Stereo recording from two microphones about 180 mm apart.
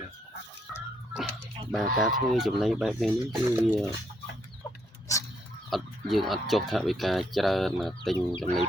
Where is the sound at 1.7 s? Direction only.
Centre (ahead or behind).